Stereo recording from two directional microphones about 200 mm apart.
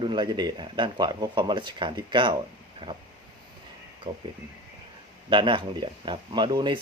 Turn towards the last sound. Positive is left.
turn(degrees=-20)  # may be behind; listen again after turning